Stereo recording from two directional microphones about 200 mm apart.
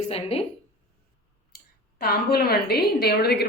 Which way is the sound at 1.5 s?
50° left (ahead or behind).